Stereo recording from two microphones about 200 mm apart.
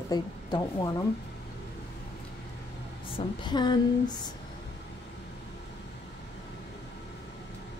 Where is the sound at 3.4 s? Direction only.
20° left (ahead or behind).